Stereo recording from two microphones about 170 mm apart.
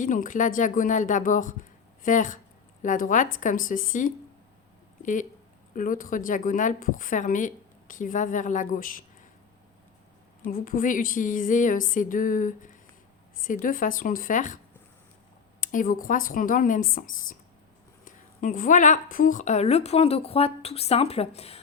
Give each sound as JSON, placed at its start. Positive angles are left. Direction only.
{"t": 0.0, "sound": "a woman's voice", "side_deg": 50}
{"t": 5.7, "sound": "a woman's voice", "side_deg": 50}
{"t": 10.4, "sound": "a woman's voice", "side_deg": 50}
{"t": 15.6, "sound": "a woman's voice", "side_deg": 50}